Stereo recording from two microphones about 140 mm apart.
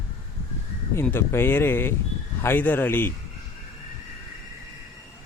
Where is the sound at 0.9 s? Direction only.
15° left (ahead or behind).